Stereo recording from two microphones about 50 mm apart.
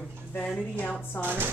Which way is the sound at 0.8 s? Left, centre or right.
Left.